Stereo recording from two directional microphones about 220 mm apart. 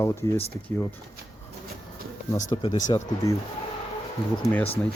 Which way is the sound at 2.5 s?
20° left (ahead or behind).